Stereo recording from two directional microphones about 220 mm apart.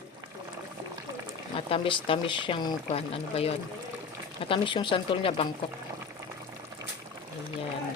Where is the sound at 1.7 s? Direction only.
25° left (ahead or behind).